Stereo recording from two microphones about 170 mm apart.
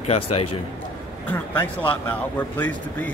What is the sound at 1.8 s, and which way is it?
Speech, 10° left (ahead or behind).